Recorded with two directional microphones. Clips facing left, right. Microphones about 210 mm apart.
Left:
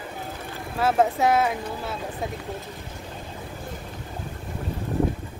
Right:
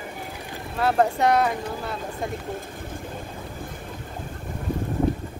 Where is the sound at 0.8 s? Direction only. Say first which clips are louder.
Even; centre (ahead or behind).